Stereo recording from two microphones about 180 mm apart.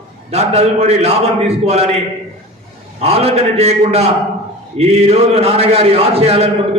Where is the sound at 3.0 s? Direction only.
35° right (ahead or behind).